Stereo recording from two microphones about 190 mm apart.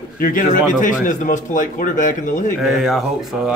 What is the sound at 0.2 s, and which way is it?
Speech, 45° left (ahead or behind).